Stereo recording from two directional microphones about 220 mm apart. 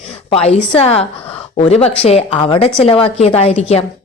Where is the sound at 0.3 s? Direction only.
25° left (ahead or behind).